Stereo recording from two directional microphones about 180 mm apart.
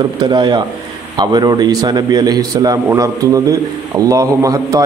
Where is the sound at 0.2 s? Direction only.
20° right (ahead or behind).